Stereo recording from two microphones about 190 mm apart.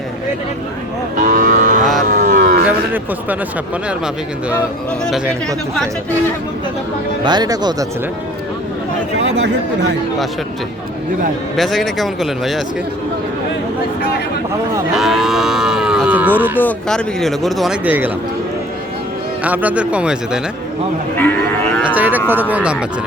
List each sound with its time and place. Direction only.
1.1 s cattle: 45° right (ahead or behind)
1.8 s a sound: centre (ahead or behind)
2.0 s a sound: 45° right (ahead or behind)
2.6 s a sound: 10° right (ahead or behind)
3.8 s speech: 5° right (ahead or behind)
7.3 s speech: 20° right (ahead or behind)
9.1 s speech: 65° right (ahead or behind)
11.5 s speech: centre (ahead or behind)
14.9 s speech: centre (ahead or behind)
16.6 s speech: 5° left (ahead or behind)
19.4 s a man's voice: 5° right (ahead or behind)
21.8 s a man's voice: 10° right (ahead or behind)